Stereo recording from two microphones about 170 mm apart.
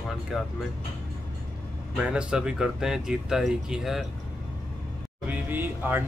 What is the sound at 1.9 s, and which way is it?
Speech, 5° right (ahead or behind).